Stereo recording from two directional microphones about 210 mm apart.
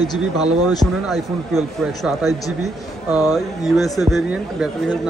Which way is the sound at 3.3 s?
Centre (ahead or behind).